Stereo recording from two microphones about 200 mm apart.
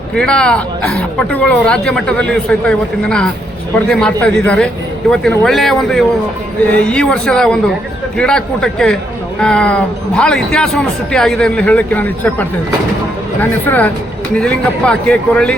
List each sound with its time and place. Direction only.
0.1 s a woman's voice: 5° left (ahead or behind)